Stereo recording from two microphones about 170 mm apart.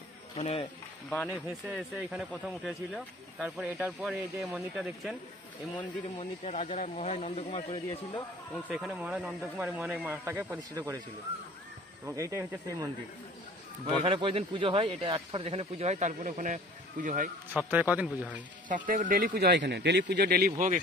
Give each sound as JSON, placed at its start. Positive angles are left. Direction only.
{"t": 0.4, "sound": "speech", "side_deg": 35}
{"t": 1.1, "sound": "speech", "side_deg": 10}
{"t": 2.0, "sound": "speech", "side_deg": 0}
{"t": 6.1, "sound": "speech", "side_deg": 40}
{"t": 8.6, "sound": "speech", "side_deg": 0}
{"t": 12.1, "sound": "speech", "side_deg": -15}
{"t": 14.0, "sound": "a man's voice", "side_deg": -35}
{"t": 17.6, "sound": "speech", "side_deg": -10}
{"t": 18.7, "sound": "speech", "side_deg": -50}